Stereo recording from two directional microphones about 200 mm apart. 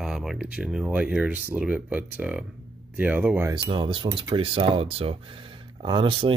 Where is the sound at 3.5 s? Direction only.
25° right (ahead or behind).